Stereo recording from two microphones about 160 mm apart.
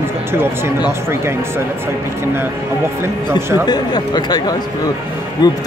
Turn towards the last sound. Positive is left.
turn(degrees=25)  # may be behind; listen again after turning